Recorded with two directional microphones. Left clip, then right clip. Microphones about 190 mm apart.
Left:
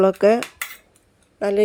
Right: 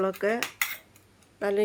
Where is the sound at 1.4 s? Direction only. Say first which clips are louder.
Left 6 dB; 35° left (ahead or behind).